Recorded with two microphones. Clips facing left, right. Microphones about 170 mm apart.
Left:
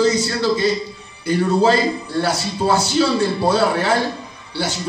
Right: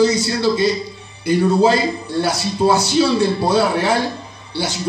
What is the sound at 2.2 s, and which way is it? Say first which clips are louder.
A man's voice: right 3 dB; 15° right (ahead or behind).